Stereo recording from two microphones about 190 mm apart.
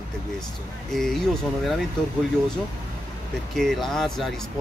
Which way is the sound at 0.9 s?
Centre (ahead or behind).